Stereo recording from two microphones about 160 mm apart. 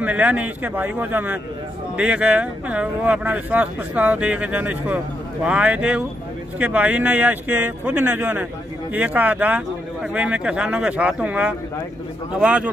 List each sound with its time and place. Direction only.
0.0 s speech: 10° right (ahead or behind)